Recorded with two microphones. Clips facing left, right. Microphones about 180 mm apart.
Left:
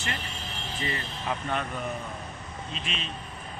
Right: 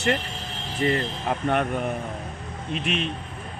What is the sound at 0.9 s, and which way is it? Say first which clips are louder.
Speech: right 8 dB; 50° right (ahead or behind).